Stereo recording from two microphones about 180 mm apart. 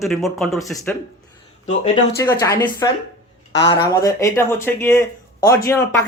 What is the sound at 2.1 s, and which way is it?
Speech, 15° left (ahead or behind).